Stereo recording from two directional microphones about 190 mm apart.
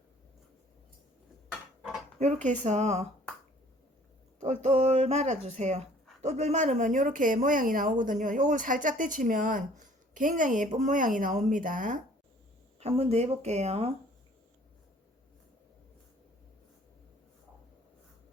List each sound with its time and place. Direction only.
2.1 s speech: 35° right (ahead or behind)
4.6 s speech: 35° right (ahead or behind)